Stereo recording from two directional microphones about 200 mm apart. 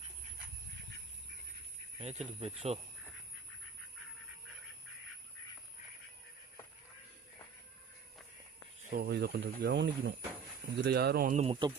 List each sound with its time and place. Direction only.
2.0 s speech: 35° right (ahead or behind)
8.8 s speech: 50° right (ahead or behind); by 10.2 s 65° right (ahead or behind)
10.8 s speech: 55° right (ahead or behind)